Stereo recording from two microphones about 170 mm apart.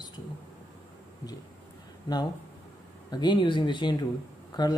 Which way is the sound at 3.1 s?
25° left (ahead or behind).